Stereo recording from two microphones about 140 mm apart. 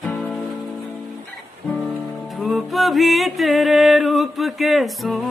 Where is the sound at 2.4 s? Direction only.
Centre (ahead or behind).